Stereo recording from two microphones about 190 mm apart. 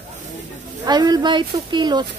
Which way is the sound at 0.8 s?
20° right (ahead or behind).